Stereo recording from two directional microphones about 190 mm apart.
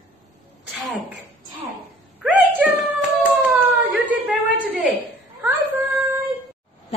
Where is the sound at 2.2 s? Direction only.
5° right (ahead or behind).